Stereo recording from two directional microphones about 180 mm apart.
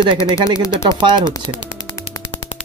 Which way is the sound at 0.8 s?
25° right (ahead or behind).